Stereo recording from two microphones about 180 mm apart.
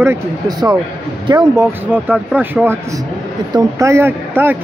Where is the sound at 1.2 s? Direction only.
20° right (ahead or behind).